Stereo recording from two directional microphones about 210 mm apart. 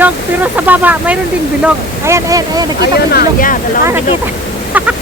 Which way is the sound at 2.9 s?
45° left (ahead or behind).